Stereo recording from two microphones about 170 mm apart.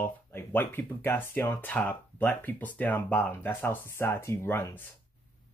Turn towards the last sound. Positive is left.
turn(degrees=10)  # may be behind; listen again after turning